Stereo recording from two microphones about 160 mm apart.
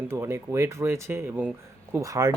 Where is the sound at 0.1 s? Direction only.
15° right (ahead or behind).